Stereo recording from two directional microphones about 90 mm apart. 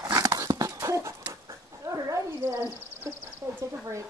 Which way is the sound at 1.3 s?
35° right (ahead or behind).